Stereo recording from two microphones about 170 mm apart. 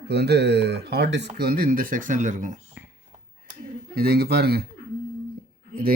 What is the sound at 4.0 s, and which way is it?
Speech, 65° right (ahead or behind).